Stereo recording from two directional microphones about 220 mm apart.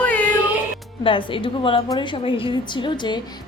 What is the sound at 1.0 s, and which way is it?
A woman's voice, 25° left (ahead or behind).